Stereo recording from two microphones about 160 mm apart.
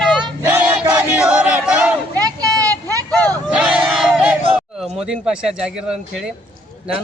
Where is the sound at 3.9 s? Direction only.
5° right (ahead or behind).